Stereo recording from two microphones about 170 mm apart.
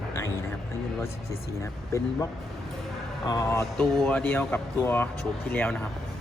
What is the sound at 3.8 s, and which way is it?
Speech, 5° left (ahead or behind).